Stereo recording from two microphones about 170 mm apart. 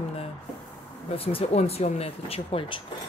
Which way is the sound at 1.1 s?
35° left (ahead or behind).